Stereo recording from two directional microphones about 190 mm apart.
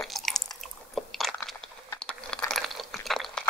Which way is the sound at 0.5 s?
Centre (ahead or behind).